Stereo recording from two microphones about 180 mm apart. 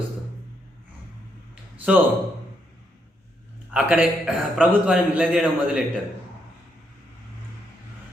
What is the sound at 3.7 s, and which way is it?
A man's voice, 5° right (ahead or behind).